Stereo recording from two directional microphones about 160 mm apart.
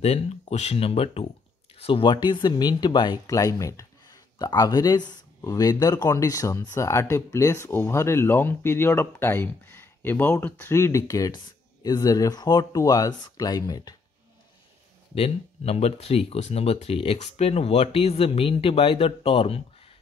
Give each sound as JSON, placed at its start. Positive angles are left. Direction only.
{"t": 0.0, "sound": "speech", "side_deg": 40}
{"t": 15.1, "sound": "speech", "side_deg": 40}